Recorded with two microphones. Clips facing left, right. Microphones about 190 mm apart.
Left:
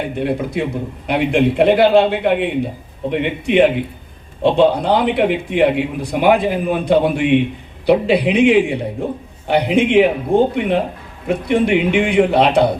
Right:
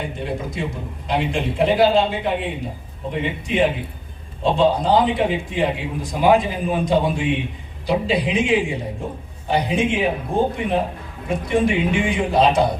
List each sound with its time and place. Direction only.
0.2 s a man's voice: 65° left (ahead or behind)